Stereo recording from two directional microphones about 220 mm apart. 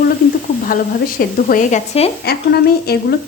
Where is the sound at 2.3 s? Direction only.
45° left (ahead or behind).